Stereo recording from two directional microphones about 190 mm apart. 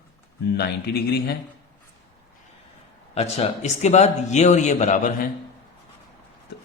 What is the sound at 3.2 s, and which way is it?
A man's voice, 35° left (ahead or behind).